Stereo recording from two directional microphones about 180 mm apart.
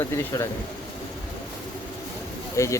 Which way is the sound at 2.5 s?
15° left (ahead or behind).